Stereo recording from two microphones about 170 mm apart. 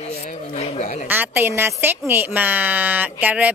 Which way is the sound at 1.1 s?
10° right (ahead or behind).